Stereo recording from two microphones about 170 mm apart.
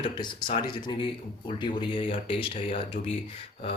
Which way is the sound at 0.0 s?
25° left (ahead or behind).